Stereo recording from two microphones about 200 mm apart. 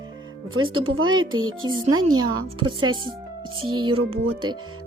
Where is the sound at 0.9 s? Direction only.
90° right.